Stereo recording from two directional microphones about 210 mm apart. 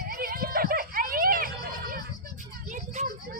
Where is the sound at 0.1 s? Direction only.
45° right (ahead or behind).